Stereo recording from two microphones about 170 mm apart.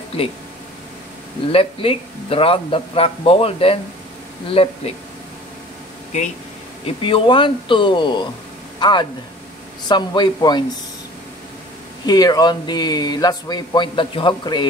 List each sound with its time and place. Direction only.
1.5 s speech: 35° left (ahead or behind)
7.0 s a man's voice: 30° left (ahead or behind)
12.1 s a man's voice: 25° left (ahead or behind)